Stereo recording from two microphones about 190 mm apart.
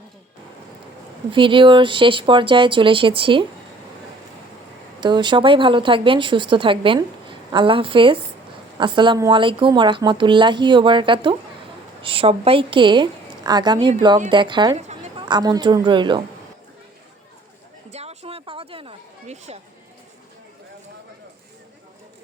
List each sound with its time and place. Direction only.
1.3 s a woman's voice: 25° right (ahead or behind)
4.9 s a woman's voice: 25° right (ahead or behind)
17.9 s a sound: 35° right (ahead or behind)